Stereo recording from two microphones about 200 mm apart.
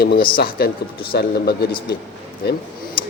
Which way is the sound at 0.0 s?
50° left (ahead or behind).